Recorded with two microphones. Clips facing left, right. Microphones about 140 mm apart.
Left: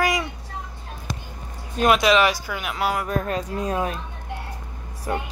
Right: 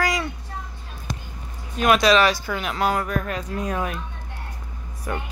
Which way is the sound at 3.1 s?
30° left (ahead or behind).